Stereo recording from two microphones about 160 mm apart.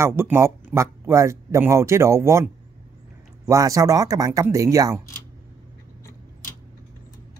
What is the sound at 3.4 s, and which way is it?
Speech, 20° right (ahead or behind).